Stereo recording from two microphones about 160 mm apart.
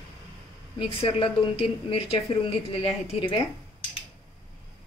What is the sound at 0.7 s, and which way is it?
A woman's voice, 35° left (ahead or behind).